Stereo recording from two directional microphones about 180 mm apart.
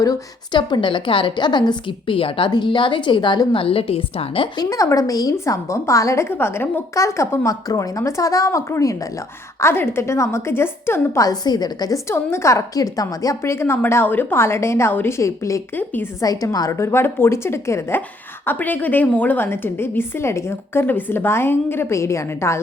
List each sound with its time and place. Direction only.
0.0 s a woman's voice: 20° left (ahead or behind)